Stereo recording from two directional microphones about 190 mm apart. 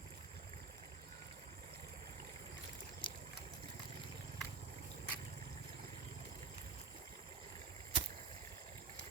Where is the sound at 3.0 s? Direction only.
25° left (ahead or behind).